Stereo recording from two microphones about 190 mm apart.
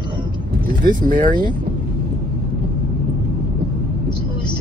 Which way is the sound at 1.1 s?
45° right (ahead or behind).